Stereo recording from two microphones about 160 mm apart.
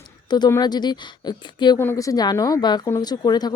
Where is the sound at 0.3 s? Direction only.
25° left (ahead or behind).